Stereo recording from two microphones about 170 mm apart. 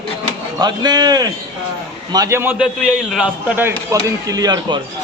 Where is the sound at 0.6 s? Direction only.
25° right (ahead or behind).